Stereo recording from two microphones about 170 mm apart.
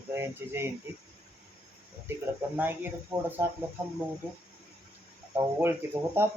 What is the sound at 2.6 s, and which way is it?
Speech, 10° right (ahead or behind).